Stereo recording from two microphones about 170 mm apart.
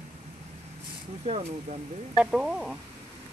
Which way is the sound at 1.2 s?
40° right (ahead or behind).